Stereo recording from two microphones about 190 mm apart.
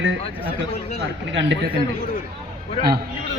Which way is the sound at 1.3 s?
70° right (ahead or behind).